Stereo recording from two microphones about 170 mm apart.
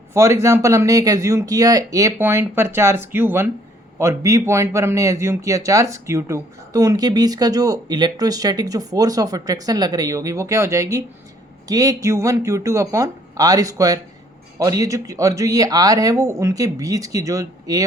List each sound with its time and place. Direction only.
0.1 s speech: 15° right (ahead or behind)